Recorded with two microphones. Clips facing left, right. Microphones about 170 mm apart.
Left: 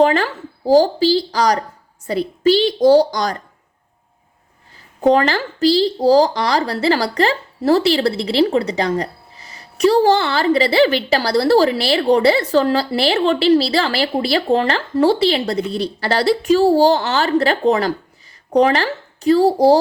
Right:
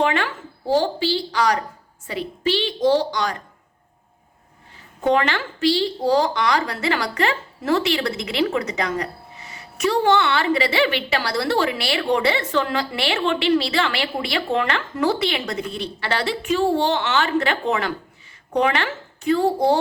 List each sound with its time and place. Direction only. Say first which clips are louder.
0.0 s a woman's voice: left 7 dB; 35° left (ahead or behind)
4.9 s a woman's voice: left 5 dB; 35° left (ahead or behind)